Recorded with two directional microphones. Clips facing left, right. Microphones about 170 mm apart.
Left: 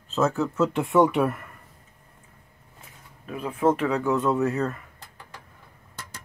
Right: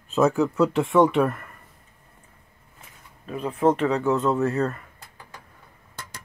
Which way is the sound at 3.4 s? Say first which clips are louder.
Right 2 dB; 5° left (ahead or behind).